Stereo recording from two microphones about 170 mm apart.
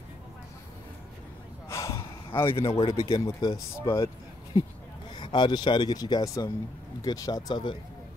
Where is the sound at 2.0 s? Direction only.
30° left (ahead or behind).